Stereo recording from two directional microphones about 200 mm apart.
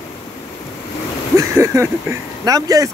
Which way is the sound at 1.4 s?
15° right (ahead or behind).